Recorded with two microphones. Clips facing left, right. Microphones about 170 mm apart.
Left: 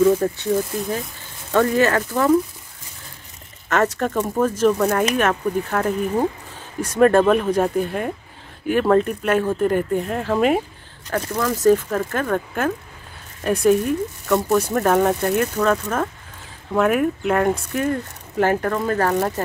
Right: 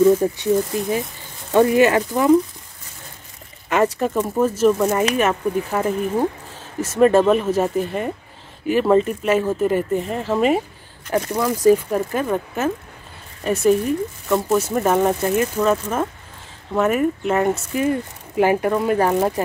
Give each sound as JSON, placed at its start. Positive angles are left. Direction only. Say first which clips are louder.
{"t": 0.2, "sound": "speech", "louder": "right 2 dB", "side_deg": -15}
{"t": 3.6, "sound": "speech", "louder": "right 1 dB", "side_deg": -10}
{"t": 11.3, "sound": "speech", "louder": "right 1 dB", "side_deg": -10}